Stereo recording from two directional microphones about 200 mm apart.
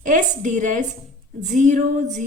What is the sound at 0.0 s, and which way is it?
A woman's voice, 40° right (ahead or behind).